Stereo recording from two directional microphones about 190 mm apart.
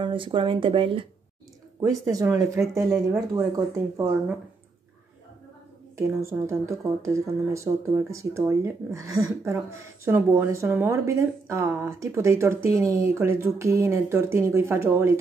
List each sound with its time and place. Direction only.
0.0 s speech: 25° right (ahead or behind)
5.9 s speech: 15° right (ahead or behind)